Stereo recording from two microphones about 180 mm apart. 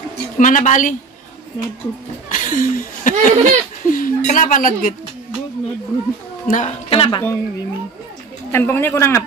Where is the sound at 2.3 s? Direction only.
45° left (ahead or behind).